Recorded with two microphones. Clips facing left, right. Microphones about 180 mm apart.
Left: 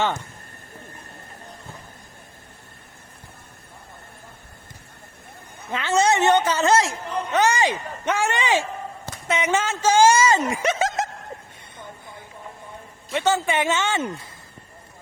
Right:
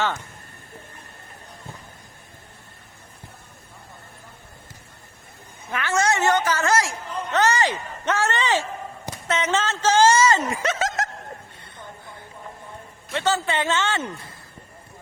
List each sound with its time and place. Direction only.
5.7 s a woman's voice: 20° left (ahead or behind)
13.1 s speech: 10° left (ahead or behind)